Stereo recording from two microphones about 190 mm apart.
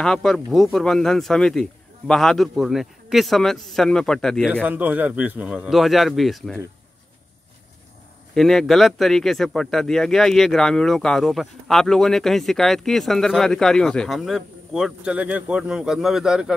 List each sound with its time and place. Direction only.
0.0 s speech: 5° left (ahead or behind)
4.6 s speech: 10° right (ahead or behind)
8.4 s speech: centre (ahead or behind)